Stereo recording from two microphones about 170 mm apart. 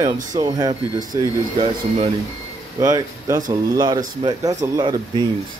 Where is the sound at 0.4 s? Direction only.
20° right (ahead or behind).